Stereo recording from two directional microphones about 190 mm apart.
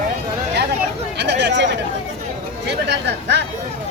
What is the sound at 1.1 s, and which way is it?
Chatter, 65° right (ahead or behind).